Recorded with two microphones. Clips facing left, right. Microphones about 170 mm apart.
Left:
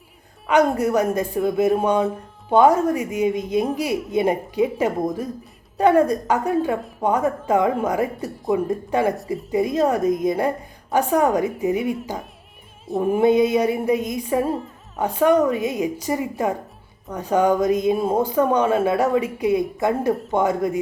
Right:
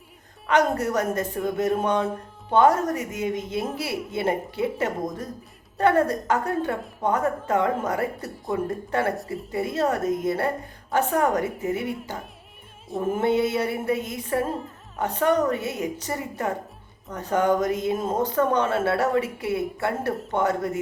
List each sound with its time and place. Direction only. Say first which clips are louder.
0.4 s speech: left 4 dB; 10° left (ahead or behind)